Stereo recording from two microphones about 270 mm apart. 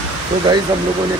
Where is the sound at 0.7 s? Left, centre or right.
Centre.